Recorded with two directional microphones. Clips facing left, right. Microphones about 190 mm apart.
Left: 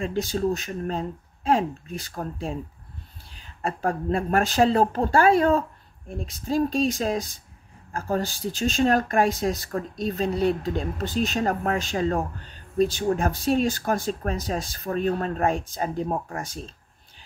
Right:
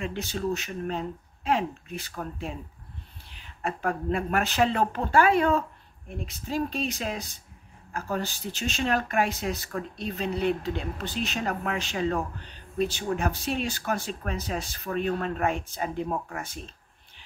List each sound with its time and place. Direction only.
0.0 s speech: 40° left (ahead or behind)
3.6 s speech: 35° left (ahead or behind)